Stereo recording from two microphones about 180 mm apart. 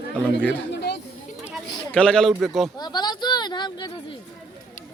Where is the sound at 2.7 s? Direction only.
25° left (ahead or behind).